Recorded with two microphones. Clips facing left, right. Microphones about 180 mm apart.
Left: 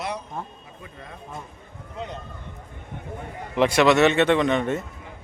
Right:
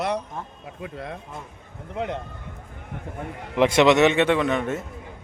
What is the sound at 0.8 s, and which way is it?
Speech, 75° right (ahead or behind).